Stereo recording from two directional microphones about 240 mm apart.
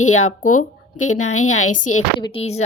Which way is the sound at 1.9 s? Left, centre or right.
Left.